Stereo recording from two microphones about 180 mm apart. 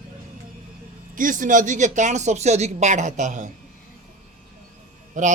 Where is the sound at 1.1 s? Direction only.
50° right (ahead or behind).